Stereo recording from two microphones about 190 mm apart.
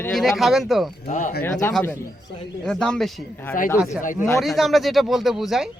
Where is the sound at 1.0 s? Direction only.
40° left (ahead or behind).